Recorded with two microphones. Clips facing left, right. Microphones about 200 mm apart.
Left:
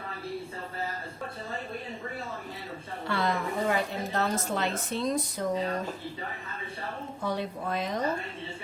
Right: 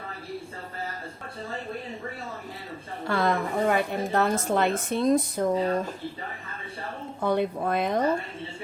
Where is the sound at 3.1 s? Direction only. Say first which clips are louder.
Right 4 dB; 50° right (ahead or behind).